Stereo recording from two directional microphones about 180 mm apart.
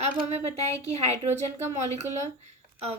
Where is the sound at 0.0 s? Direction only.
35° right (ahead or behind).